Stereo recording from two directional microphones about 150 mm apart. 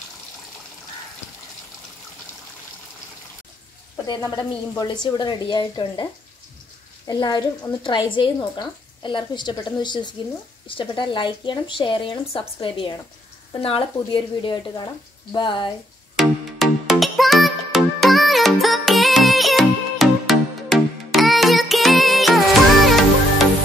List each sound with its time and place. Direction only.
4.4 s speech: 30° left (ahead or behind)
7.1 s a woman's voice: 30° left (ahead or behind)
16.2 s music: centre (ahead or behind)